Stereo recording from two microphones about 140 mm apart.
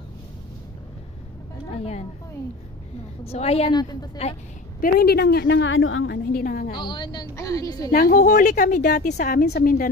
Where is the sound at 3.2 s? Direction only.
45° left (ahead or behind).